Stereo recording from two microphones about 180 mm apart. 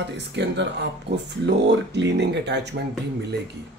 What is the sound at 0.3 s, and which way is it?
Speech, 75° right (ahead or behind).